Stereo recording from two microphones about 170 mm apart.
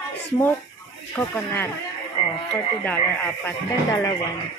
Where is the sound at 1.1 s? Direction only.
10° left (ahead or behind).